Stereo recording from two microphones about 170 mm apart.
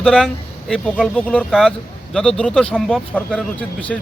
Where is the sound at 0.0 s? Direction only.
5° left (ahead or behind).